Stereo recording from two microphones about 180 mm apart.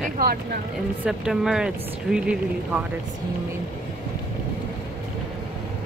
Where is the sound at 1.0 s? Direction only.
5° right (ahead or behind).